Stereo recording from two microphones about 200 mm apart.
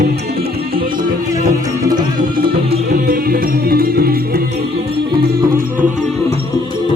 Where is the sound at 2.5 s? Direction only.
45° right (ahead or behind).